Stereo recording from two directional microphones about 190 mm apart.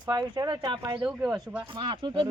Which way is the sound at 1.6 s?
25° right (ahead or behind).